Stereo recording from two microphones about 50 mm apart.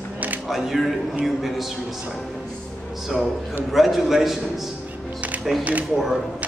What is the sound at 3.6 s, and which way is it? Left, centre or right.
A man's voice, centre.